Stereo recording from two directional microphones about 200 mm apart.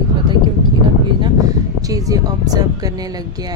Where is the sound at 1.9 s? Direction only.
15° right (ahead or behind).